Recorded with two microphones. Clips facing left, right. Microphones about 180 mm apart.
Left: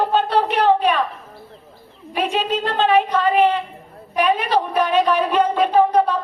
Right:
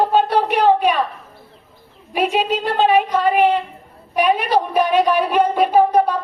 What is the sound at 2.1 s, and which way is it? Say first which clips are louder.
A woman's voice: right 2 dB; 10° right (ahead or behind).